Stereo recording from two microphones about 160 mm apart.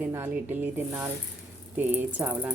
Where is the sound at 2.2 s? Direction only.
10° right (ahead or behind).